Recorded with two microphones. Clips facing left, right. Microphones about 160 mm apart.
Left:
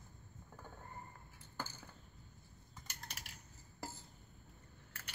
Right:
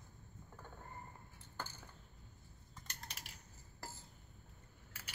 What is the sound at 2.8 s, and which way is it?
Typing, centre (ahead or behind).